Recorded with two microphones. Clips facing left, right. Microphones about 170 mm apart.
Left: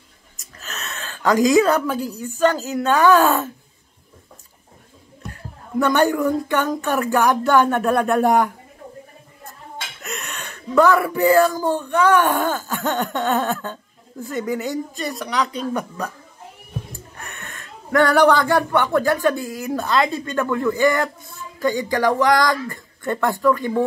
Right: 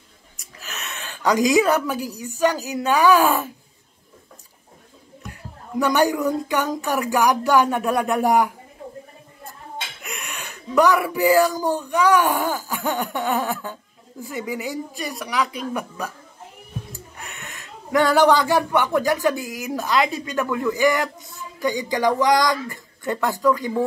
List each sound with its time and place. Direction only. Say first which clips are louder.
0.7 s speech: left 2 dB; 15° right (ahead or behind)
5.8 s speech: left 2 dB; 15° right (ahead or behind)
10.0 s a sound: left 3 dB; 10° right (ahead or behind)
10.5 s speech: left 2 dB; 15° right (ahead or behind)
17.2 s speech: left 2 dB; 15° right (ahead or behind)